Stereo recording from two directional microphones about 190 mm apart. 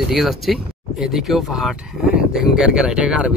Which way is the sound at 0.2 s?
Centre (ahead or behind).